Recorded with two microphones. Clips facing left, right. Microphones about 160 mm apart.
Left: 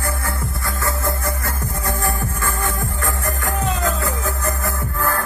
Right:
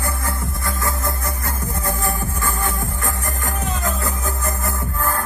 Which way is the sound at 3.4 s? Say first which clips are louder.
Left 3 dB; 20° right (ahead or behind).